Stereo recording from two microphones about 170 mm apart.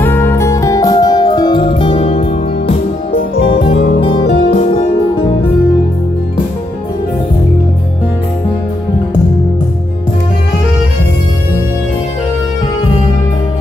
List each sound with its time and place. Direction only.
0.0 s music: 15° left (ahead or behind); by 3.7 s 30° left (ahead or behind)
4.2 s music: 80° left
4.6 s music: 35° left (ahead or behind)